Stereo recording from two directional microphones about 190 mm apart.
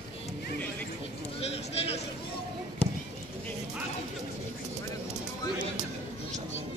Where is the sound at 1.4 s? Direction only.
30° left (ahead or behind).